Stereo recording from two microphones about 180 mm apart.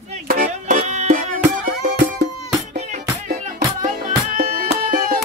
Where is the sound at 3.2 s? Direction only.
50° right (ahead or behind).